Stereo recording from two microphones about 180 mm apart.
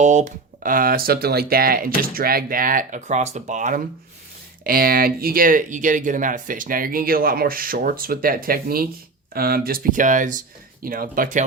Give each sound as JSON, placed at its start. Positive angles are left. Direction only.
{"t": 0.0, "sound": "speech", "side_deg": -40}
{"t": 4.6, "sound": "speech", "side_deg": -55}